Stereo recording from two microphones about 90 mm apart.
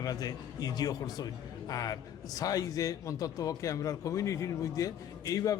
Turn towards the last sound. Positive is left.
turn(degrees=40)  # may be behind; listen again after turning